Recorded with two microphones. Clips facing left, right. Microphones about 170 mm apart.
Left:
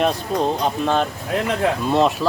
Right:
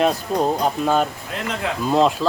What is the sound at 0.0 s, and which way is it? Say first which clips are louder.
Speech: right 1 dB; 5° right (ahead or behind).